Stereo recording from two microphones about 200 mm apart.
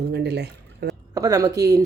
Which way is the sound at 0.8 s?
55° right (ahead or behind).